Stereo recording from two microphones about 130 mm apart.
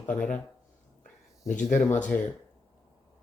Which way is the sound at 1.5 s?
75° left (ahead or behind).